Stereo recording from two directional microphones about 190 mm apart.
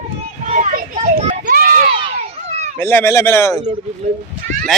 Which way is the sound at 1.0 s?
40° right (ahead or behind).